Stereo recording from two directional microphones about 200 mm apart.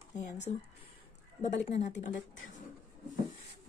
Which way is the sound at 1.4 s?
35° left (ahead or behind).